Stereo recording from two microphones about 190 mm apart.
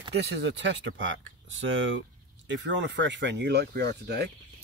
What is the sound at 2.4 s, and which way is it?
Speech, 70° right (ahead or behind).